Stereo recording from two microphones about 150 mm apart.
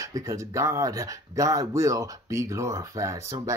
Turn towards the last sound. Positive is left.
turn(degrees=-20)  # may be behind; listen again after turning